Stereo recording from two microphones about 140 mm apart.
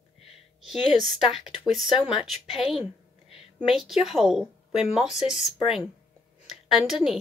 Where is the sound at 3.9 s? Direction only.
Centre (ahead or behind).